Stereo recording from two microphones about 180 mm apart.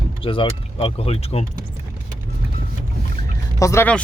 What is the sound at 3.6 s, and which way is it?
Speech, 15° left (ahead or behind).